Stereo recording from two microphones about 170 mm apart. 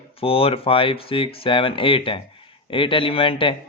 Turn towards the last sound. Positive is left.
turn(degrees=30)  # may be behind; listen again after turning